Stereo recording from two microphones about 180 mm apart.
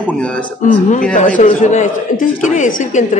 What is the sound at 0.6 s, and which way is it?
Speech, 45° left (ahead or behind).